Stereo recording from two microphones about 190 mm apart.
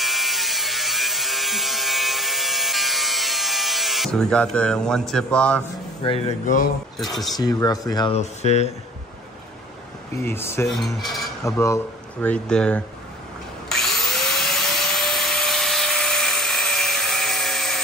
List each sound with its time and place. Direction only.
0.0 s a sound: centre (ahead or behind)
7.0 s mechanisms: centre (ahead or behind)
7.3 s speech: 20° left (ahead or behind)
8.2 s speech: 35° left (ahead or behind)
10.1 s speech: 10° left (ahead or behind)
10.7 s mechanisms: centre (ahead or behind)
11.4 s speech: 15° left (ahead or behind)
13.7 s vacuum cleaner: centre (ahead or behind)